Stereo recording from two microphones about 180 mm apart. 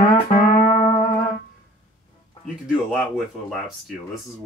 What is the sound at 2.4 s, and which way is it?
Speech, centre (ahead or behind).